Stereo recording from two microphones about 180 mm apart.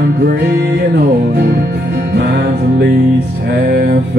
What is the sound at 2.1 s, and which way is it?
Music, 65° right (ahead or behind).